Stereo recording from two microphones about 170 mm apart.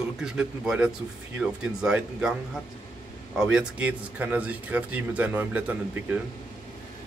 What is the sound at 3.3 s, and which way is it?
Speech, 5° right (ahead or behind).